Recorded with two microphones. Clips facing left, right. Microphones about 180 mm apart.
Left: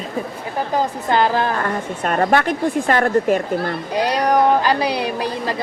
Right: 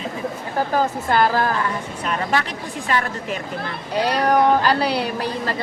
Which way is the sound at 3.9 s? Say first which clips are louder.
Left 1 dB; 15° left (ahead or behind).